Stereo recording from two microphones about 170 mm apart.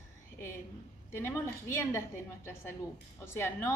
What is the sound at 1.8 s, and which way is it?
A woman's voice, 15° left (ahead or behind).